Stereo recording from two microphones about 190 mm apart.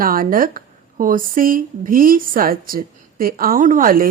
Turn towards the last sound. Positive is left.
turn(degrees=-50)  # may be behind; listen again after turning